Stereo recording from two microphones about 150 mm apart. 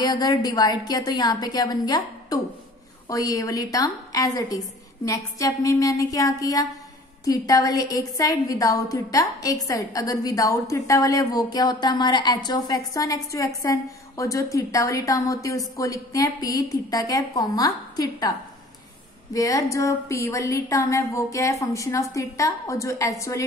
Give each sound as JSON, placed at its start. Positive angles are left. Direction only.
{"t": 0.0, "sound": "a woman's voice", "side_deg": 30}
{"t": 19.3, "sound": "a woman's voice", "side_deg": 25}